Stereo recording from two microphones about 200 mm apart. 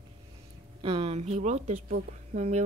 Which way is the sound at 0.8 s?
25° right (ahead or behind).